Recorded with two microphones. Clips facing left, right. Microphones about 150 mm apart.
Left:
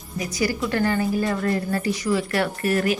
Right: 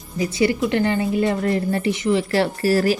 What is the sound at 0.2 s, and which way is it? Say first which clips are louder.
A woman's voice: right 5 dB; 25° right (ahead or behind).